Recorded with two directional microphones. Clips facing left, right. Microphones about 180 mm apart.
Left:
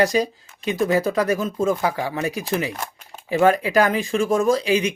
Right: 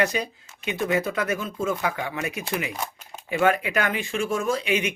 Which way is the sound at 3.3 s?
35° left (ahead or behind).